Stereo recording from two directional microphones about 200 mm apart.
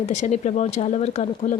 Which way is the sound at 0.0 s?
35° left (ahead or behind).